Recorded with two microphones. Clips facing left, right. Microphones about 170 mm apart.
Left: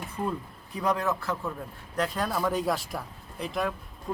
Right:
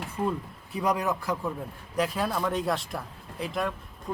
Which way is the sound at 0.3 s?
10° right (ahead or behind).